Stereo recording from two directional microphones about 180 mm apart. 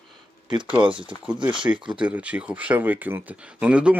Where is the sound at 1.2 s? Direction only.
5° right (ahead or behind).